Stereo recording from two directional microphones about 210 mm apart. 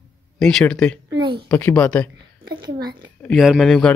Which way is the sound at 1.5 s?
10° left (ahead or behind).